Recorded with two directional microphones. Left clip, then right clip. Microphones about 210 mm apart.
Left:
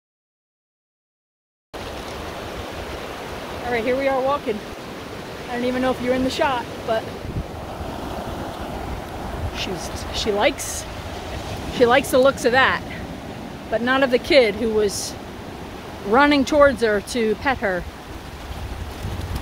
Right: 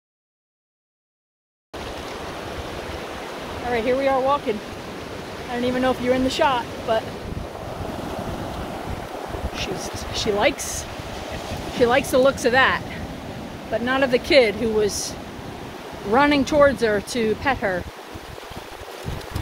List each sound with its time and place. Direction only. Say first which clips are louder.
3.7 s speech: even; 15° right (ahead or behind)
5.6 s speech: even; 10° right (ahead or behind)
9.6 s speech: left 1 dB; 5° left (ahead or behind)